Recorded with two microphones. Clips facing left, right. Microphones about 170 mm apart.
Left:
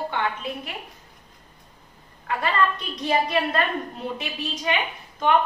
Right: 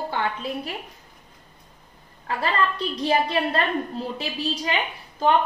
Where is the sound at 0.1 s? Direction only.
35° right (ahead or behind).